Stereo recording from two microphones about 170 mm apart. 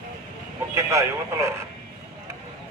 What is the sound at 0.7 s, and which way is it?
Speech, 15° right (ahead or behind).